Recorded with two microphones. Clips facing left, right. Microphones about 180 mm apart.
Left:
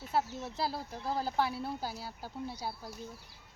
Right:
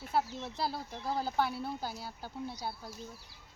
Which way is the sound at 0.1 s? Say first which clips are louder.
Even; 5° left (ahead or behind).